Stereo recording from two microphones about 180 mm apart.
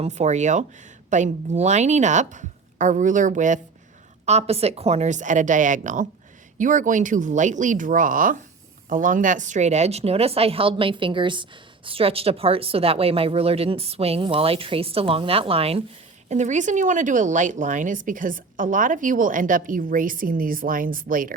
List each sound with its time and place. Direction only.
0.0 s speech: 40° right (ahead or behind)